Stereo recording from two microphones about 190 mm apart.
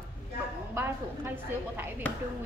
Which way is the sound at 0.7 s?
10° right (ahead or behind).